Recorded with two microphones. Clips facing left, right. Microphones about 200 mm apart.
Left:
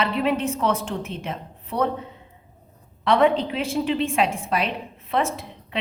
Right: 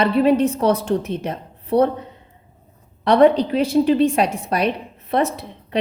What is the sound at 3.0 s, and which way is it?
A woman's voice, 40° right (ahead or behind).